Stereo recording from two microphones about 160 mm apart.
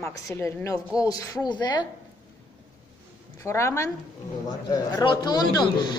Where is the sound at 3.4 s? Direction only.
15° left (ahead or behind).